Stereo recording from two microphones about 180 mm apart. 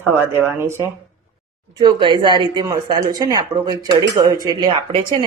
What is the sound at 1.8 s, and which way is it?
Speech, 25° right (ahead or behind).